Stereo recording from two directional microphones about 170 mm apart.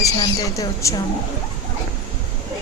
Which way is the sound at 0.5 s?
20° left (ahead or behind).